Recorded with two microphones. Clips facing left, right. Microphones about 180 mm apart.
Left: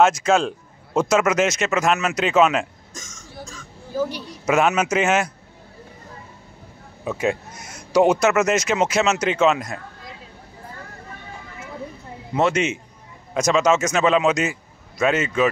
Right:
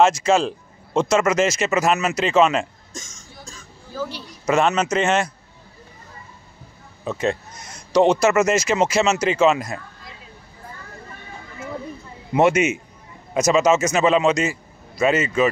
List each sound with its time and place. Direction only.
0.0 s speech: centre (ahead or behind)
2.9 s cough: 30° right (ahead or behind)
3.9 s a woman's voice: 15° left (ahead or behind)
4.5 s speech: 5° left (ahead or behind)
7.1 s speech: 10° left (ahead or behind)
12.4 s a man's voice: 10° right (ahead or behind)